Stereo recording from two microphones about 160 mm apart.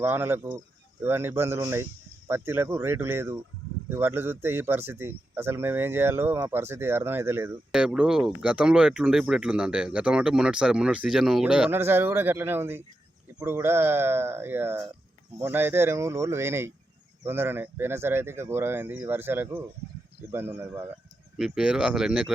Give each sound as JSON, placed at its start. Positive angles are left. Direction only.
{"t": 0.0, "sound": "speech", "side_deg": -15}
{"t": 7.7, "sound": "speech", "side_deg": -5}
{"t": 21.3, "sound": "speech", "side_deg": -5}